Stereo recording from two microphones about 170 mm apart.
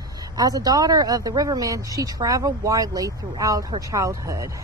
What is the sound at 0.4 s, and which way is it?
Speech, 20° right (ahead or behind).